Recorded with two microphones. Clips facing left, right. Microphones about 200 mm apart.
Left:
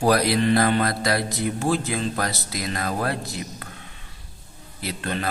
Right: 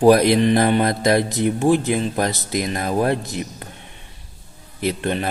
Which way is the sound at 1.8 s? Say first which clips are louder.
Right 5 dB; 20° right (ahead or behind).